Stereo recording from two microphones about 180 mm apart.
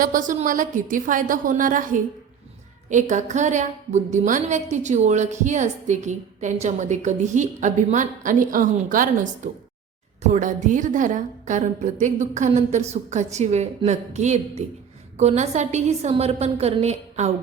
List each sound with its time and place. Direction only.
0.0 s a woman's voice: 45° right (ahead or behind)